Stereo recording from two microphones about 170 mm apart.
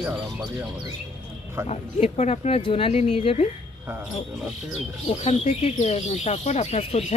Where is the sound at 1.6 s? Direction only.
40° left (ahead or behind).